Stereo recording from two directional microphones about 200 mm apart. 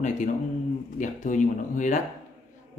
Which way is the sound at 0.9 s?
40° left (ahead or behind).